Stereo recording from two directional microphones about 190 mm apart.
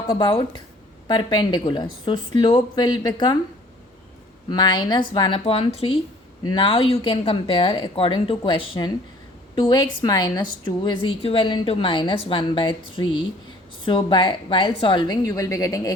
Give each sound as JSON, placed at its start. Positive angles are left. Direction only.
{"t": 0.1, "sound": "speech", "side_deg": 25}
{"t": 4.4, "sound": "speech", "side_deg": 25}